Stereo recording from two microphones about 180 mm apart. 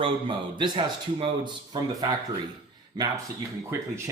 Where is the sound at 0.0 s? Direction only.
25° right (ahead or behind).